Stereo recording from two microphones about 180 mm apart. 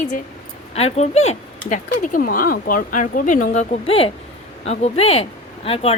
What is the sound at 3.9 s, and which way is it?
A woman's voice, 30° left (ahead or behind).